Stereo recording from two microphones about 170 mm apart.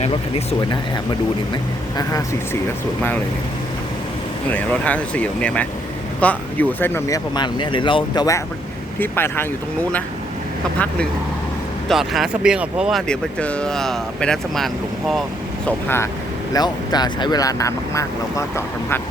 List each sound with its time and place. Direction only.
0.0 s speech: 35° left (ahead or behind)
2.0 s speech: 20° left (ahead or behind)
4.5 s speech: 10° left (ahead or behind)
7.3 s speech: 25° left (ahead or behind)
9.0 s speech: 15° left (ahead or behind)
11.9 s speech: centre (ahead or behind)
13.1 s speech: 5° left (ahead or behind)
15.6 s speech: 15° left (ahead or behind)
16.5 s speech: 25° left (ahead or behind)